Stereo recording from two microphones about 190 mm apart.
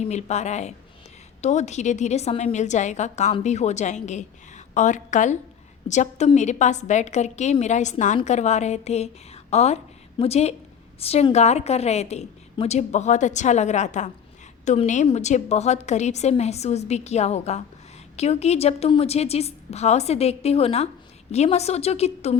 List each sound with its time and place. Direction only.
0.0 s a woman's voice: 35° left (ahead or behind)